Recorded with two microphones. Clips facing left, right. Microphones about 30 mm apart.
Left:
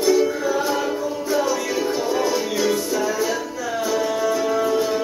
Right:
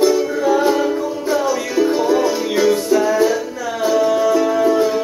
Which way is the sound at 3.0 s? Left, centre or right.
Right.